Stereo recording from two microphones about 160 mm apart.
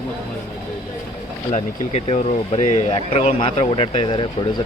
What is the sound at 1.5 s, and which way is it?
Speech, 45° left (ahead or behind).